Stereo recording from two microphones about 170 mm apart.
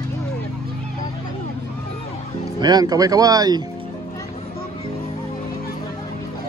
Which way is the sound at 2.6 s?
25° right (ahead or behind).